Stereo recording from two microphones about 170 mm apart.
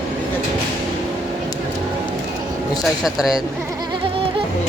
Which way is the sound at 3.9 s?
30° right (ahead or behind).